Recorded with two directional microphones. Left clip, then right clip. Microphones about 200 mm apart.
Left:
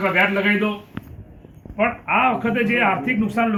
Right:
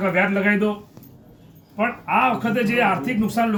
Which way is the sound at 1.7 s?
30° right (ahead or behind).